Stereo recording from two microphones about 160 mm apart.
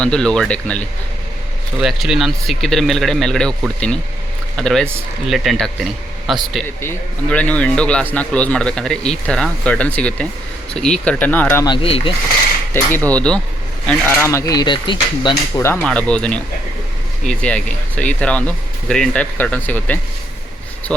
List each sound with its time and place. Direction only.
0.0 s speech: 5° left (ahead or behind)
1.8 s speech: centre (ahead or behind)
6.8 s a man's voice: 10° left (ahead or behind)
11.7 s speech: 35° left (ahead or behind)
12.7 s a man's voice: 15° left (ahead or behind)
15.8 s a man's voice: 5° left (ahead or behind)